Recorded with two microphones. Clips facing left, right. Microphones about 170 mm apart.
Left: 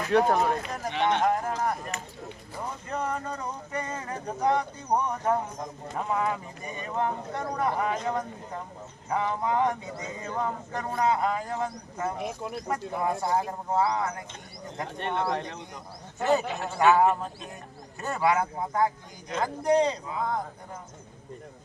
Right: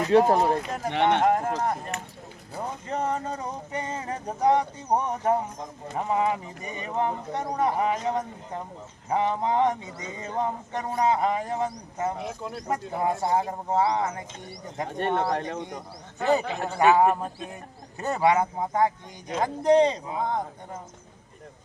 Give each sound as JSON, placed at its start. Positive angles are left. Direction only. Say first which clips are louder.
{"t": 0.0, "sound": "speech", "louder": "right 3 dB", "side_deg": -25}
{"t": 2.9, "sound": "speech", "louder": "right 3 dB", "side_deg": -25}
{"t": 12.2, "sound": "speech", "louder": "left 1 dB", "side_deg": 15}
{"t": 12.6, "sound": "speech", "louder": "right 3 dB", "side_deg": -20}
{"t": 14.9, "sound": "speech", "louder": "right 4 dB", "side_deg": -40}
{"t": 16.6, "sound": "a man's voice", "louder": "right 2 dB", "side_deg": -15}